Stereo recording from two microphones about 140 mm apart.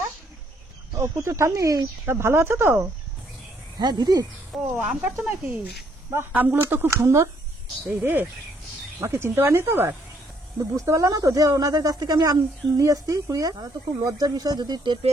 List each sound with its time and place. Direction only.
0.9 s speech: 20° right (ahead or behind)
5.2 s speech: 10° right (ahead or behind)
8.0 s speech: 15° right (ahead or behind); by 15.0 s 30° right (ahead or behind)